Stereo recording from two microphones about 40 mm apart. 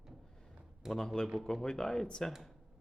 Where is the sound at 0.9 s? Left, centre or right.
Centre.